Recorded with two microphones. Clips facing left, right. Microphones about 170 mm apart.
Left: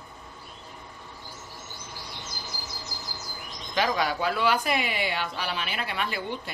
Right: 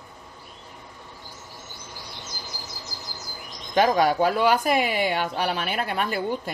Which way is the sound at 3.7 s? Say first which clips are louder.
Right 7 dB; 45° right (ahead or behind).